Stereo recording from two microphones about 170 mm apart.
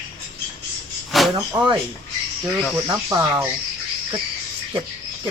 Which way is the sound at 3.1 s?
20° right (ahead or behind).